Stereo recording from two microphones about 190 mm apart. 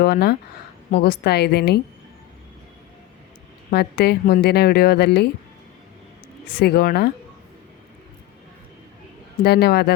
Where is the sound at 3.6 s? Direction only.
55° left (ahead or behind).